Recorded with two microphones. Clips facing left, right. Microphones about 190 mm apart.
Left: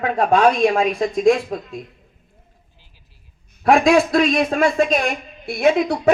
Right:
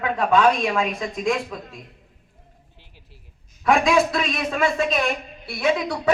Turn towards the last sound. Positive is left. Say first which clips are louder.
# left 6 dB
turn(degrees=50)  # may be behind; listen again after turning